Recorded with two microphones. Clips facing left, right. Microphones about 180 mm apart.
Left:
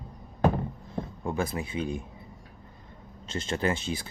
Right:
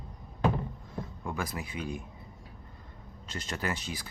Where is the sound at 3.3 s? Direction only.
25° left (ahead or behind).